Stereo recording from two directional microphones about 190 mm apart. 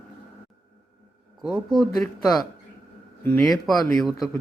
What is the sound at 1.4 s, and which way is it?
A man's voice, centre (ahead or behind).